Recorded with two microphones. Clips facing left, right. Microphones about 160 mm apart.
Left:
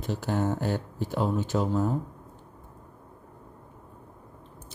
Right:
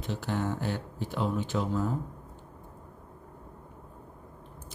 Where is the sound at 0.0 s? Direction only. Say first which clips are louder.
Left 4 dB; 40° left (ahead or behind).